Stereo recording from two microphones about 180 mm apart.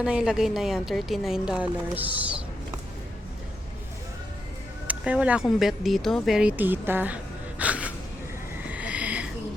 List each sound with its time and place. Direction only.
0.0 s speech: 5° right (ahead or behind)
4.9 s speech: 5° right (ahead or behind)
7.6 s gasp: 5° right (ahead or behind)
8.6 s a sound: 5° right (ahead or behind)